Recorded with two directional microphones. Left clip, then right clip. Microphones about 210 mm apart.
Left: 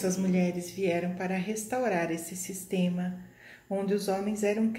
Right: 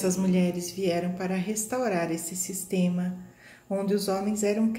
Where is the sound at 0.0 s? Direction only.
10° right (ahead or behind).